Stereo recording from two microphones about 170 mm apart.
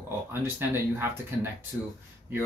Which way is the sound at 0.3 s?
15° right (ahead or behind).